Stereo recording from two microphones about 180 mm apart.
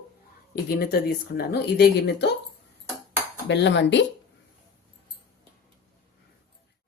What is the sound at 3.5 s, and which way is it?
Speech, 75° left (ahead or behind).